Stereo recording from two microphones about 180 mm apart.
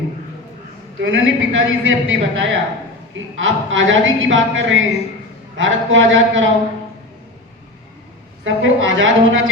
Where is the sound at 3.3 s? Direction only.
90° right.